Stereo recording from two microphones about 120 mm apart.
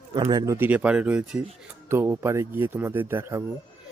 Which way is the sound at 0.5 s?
15° right (ahead or behind).